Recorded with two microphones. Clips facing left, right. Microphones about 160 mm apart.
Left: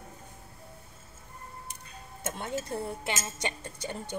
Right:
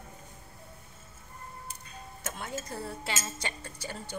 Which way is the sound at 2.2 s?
25° left (ahead or behind).